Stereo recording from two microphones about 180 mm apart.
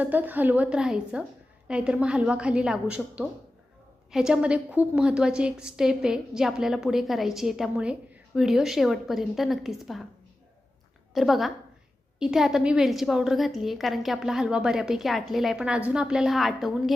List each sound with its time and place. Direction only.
0.0 s a woman's voice: 10° right (ahead or behind)
11.1 s a woman's voice: centre (ahead or behind)